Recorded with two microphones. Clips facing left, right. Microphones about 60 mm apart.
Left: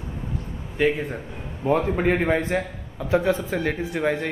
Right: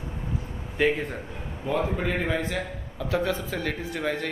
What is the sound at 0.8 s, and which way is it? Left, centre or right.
Speech, centre.